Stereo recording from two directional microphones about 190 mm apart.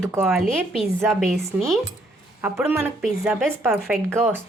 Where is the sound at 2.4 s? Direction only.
15° right (ahead or behind).